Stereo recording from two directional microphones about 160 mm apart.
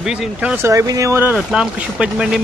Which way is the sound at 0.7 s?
20° right (ahead or behind).